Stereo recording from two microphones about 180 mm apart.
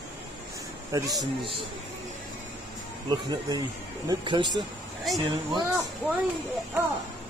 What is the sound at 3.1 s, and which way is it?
Speech, 20° right (ahead or behind).